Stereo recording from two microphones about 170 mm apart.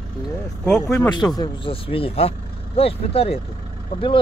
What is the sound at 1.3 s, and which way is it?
Speech, 25° left (ahead or behind).